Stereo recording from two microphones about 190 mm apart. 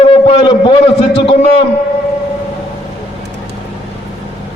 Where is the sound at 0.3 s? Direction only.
25° left (ahead or behind).